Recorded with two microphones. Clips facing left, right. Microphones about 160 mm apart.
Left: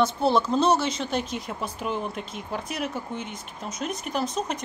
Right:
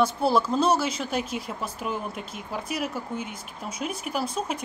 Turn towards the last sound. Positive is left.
turn(degrees=-5)  # may be behind; listen again after turning